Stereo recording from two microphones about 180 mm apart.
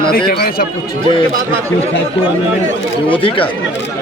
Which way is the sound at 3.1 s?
30° left (ahead or behind).